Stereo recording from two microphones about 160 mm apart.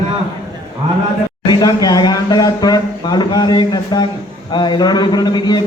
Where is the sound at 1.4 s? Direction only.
25° left (ahead or behind).